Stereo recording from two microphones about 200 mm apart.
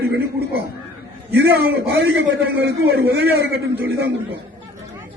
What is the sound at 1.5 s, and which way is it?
A man's voice, 55° right (ahead or behind).